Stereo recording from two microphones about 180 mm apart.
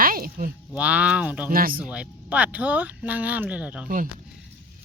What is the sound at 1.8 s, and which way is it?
Speech, 5° right (ahead or behind).